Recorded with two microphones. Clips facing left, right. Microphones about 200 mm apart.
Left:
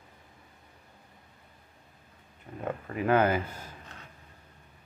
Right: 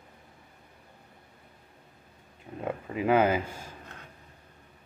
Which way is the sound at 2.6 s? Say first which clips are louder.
Right 1 dB; 15° right (ahead or behind).